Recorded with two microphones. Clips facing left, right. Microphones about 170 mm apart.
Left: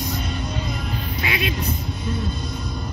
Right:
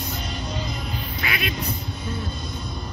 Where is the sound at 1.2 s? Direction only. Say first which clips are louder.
Left 3 dB; 25° left (ahead or behind).